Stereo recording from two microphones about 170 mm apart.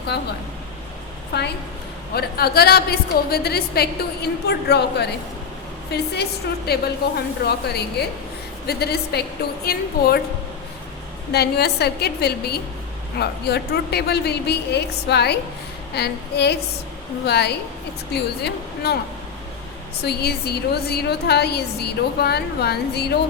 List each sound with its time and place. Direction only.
1.3 s a woman's voice: 80° left
2.1 s a woman's voice: 65° left (ahead or behind)
11.3 s a woman's voice: 70° left (ahead or behind)
20.0 s a woman's voice: 70° left (ahead or behind)